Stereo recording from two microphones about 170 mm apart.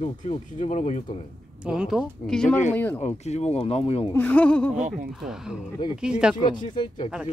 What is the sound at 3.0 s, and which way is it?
Speech, 40° left (ahead or behind).